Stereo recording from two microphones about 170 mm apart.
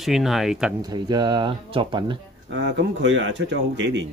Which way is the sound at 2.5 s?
90° right.